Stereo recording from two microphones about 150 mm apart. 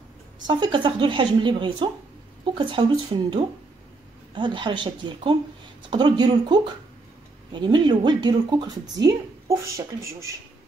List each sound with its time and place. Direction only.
0.5 s a woman's voice: 35° right (ahead or behind)